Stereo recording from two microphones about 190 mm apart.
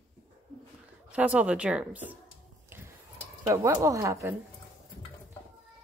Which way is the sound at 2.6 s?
10° right (ahead or behind).